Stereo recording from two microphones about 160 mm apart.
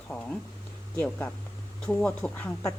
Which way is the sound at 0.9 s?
15° left (ahead or behind).